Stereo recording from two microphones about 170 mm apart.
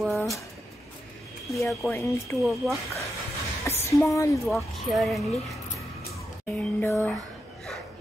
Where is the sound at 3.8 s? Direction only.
15° left (ahead or behind).